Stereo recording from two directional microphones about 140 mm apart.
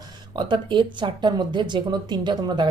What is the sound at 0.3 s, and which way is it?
A woman's voice, 35° right (ahead or behind).